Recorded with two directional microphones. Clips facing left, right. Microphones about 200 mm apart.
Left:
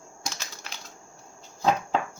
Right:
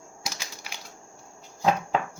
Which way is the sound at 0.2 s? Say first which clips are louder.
Even; 10° right (ahead or behind).